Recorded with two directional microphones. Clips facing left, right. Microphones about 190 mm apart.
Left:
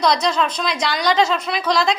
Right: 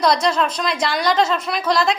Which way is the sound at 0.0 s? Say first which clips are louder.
Right 1 dB; 5° right (ahead or behind).